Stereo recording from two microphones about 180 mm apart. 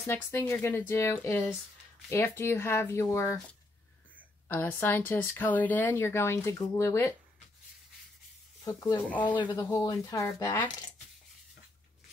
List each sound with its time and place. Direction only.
0.0 s speech: 15° left (ahead or behind)
4.5 s speech: 10° left (ahead or behind)
8.6 s speech: 15° left (ahead or behind)
9.2 s speech: 25° left (ahead or behind)